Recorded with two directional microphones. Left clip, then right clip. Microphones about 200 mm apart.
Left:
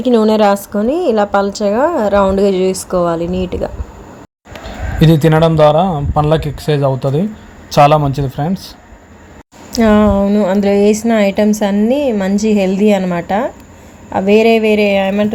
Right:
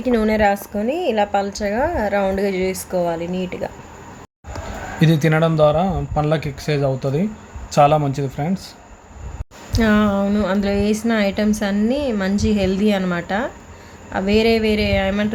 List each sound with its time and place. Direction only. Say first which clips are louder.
0.8 s a woman's voice: left 6 dB; 30° left (ahead or behind)
4.9 s a woman's voice: left 7 dB; 20° left (ahead or behind)
9.7 s a woman's voice: left 7 dB; 20° left (ahead or behind)